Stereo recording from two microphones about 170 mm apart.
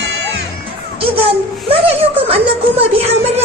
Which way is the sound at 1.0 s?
35° right (ahead or behind).